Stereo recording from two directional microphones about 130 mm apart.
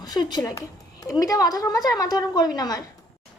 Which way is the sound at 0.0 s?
30° left (ahead or behind).